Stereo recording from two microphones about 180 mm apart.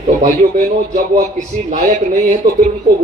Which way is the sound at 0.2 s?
50° right (ahead or behind).